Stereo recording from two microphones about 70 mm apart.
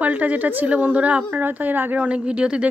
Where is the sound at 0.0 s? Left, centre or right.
Right.